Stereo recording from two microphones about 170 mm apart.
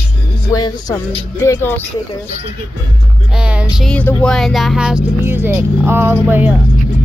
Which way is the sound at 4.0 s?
10° left (ahead or behind).